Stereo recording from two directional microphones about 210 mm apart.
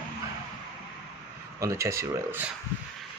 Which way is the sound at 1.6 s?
15° right (ahead or behind).